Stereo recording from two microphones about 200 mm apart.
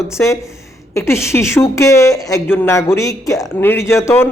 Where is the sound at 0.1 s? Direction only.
15° left (ahead or behind).